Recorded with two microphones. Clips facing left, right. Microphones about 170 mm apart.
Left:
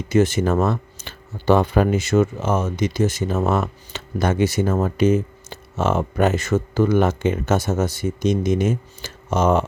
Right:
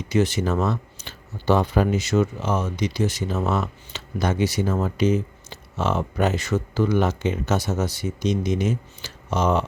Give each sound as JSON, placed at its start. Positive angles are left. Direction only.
{"t": 0.1, "sound": "speech", "side_deg": 50}